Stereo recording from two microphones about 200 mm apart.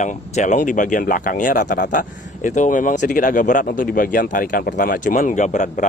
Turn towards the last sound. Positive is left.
turn(degrees=40)  # may be behind; listen again after turning